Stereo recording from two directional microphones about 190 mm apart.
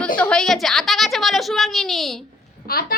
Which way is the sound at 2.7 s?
50° left (ahead or behind).